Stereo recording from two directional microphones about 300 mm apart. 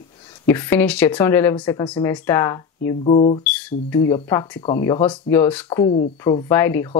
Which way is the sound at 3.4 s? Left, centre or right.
Centre.